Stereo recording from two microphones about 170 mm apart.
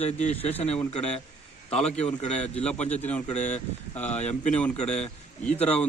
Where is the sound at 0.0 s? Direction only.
40° left (ahead or behind).